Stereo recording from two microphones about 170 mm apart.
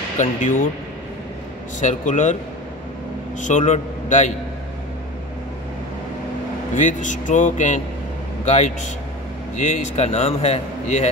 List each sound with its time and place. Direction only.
0.2 s a man's voice: 50° left (ahead or behind)
1.8 s a man's voice: 45° left (ahead or behind)
3.3 s a man's voice: 45° left (ahead or behind)
6.7 s a man's voice: 50° left (ahead or behind)